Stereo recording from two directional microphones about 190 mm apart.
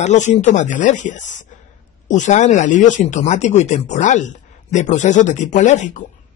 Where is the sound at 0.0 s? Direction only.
40° left (ahead or behind).